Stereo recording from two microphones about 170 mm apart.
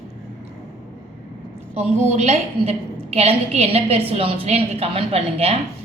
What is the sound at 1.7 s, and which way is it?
A woman's voice, 40° right (ahead or behind).